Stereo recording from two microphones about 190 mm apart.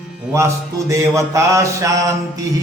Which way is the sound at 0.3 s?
15° right (ahead or behind).